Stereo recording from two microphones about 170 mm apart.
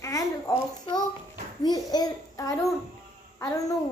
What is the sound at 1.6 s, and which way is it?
A child's voice, 25° left (ahead or behind).